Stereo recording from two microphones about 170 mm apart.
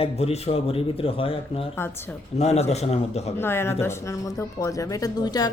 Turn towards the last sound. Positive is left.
turn(degrees=20)  # may be behind; listen again after turning